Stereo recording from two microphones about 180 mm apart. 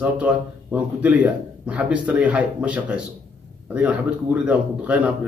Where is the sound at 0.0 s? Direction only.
10° right (ahead or behind).